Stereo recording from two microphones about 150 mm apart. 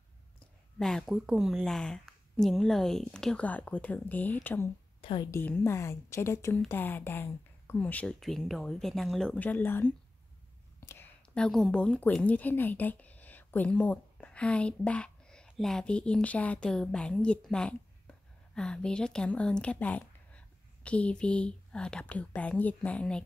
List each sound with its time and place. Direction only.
0.7 s speech: 5° left (ahead or behind)
5.0 s a woman's voice: 35° left (ahead or behind)
5.3 s a woman's voice: 15° left (ahead or behind)